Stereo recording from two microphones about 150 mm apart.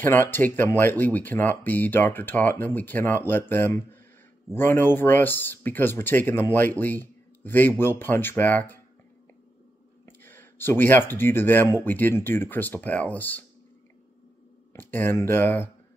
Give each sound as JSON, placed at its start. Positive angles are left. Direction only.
{"t": 0.0, "sound": "speech", "side_deg": 15}
{"t": 10.0, "sound": "speech", "side_deg": 15}
{"t": 14.7, "sound": "speech", "side_deg": 15}